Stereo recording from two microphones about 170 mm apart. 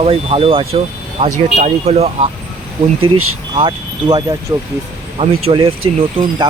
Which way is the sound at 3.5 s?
25° right (ahead or behind).